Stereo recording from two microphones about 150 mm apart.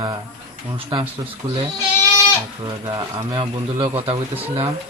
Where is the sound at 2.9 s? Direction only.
30° right (ahead or behind).